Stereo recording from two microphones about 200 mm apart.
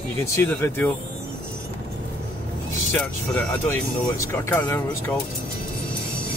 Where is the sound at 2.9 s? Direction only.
5° left (ahead or behind).